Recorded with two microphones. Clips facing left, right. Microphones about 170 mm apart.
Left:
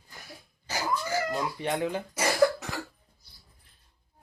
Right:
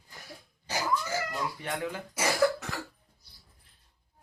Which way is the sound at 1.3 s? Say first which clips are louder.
Left 5 dB; 20° left (ahead or behind).